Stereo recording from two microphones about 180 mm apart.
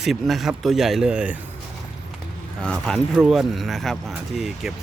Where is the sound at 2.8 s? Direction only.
Centre (ahead or behind).